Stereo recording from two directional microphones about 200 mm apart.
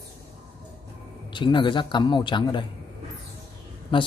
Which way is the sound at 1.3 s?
25° left (ahead or behind).